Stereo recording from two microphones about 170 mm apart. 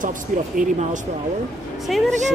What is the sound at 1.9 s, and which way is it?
Speech, centre (ahead or behind).